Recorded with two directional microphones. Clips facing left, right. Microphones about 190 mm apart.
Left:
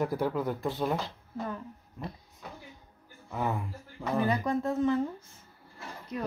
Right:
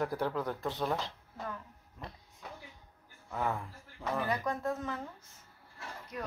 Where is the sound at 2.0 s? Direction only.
10° left (ahead or behind).